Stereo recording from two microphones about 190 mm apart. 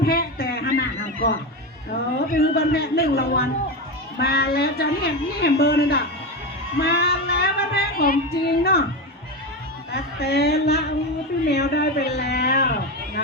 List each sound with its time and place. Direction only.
0.0 s a sound: 50° left (ahead or behind)
2.1 s a woman's voice: 55° left (ahead or behind)
6.8 s music: 55° left (ahead or behind)
9.9 s a woman's voice: 55° left (ahead or behind)